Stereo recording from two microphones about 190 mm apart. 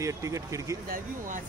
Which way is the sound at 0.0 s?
15° right (ahead or behind).